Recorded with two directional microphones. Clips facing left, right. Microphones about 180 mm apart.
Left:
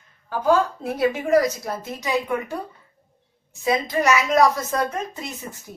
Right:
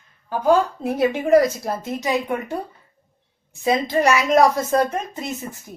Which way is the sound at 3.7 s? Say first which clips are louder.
Right 2 dB; 30° right (ahead or behind).